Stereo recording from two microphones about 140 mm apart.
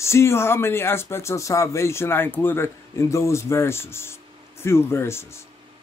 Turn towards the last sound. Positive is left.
turn(degrees=20)  # may be behind; listen again after turning